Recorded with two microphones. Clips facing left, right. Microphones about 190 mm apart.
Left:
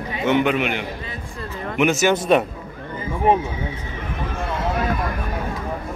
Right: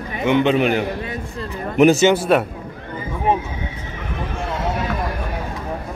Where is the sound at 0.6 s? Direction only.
40° right (ahead or behind).